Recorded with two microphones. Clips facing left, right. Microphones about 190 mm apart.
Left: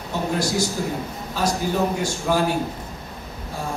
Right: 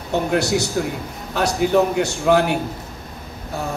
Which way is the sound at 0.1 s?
70° right (ahead or behind).